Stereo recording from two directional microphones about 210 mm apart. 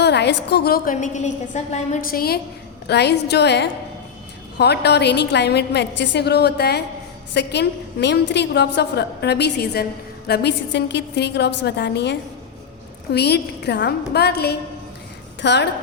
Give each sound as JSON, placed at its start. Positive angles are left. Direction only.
{"t": 0.0, "sound": "a woman's voice", "side_deg": 55}
{"t": 13.1, "sound": "a woman's voice", "side_deg": 50}